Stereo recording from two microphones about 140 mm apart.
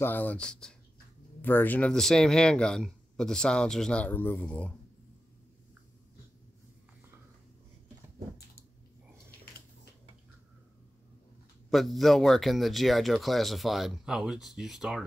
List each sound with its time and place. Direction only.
0.0 s speech: 15° left (ahead or behind)
11.7 s speech: centre (ahead or behind)